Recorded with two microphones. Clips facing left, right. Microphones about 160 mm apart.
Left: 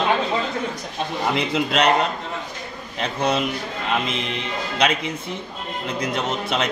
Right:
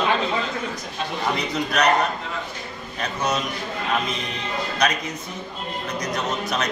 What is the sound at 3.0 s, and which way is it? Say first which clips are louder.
Speech: left 3 dB; 30° left (ahead or behind).